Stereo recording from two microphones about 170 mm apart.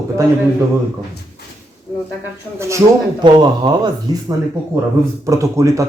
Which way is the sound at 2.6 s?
15° right (ahead or behind).